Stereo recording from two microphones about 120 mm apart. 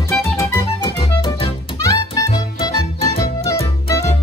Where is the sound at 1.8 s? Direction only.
30° left (ahead or behind).